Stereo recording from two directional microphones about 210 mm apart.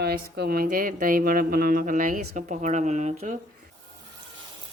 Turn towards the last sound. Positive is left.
turn(degrees=-35)  # may be behind; listen again after turning